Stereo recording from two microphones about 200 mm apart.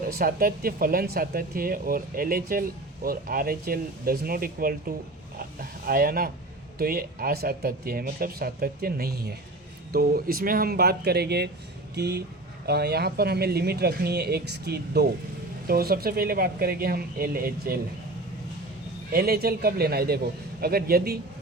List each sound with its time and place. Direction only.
0.1 s speech: 50° right (ahead or behind)
5.4 s a sound: 45° right (ahead or behind)
6.7 s speech: 50° right (ahead or behind)
19.1 s speech: 50° right (ahead or behind)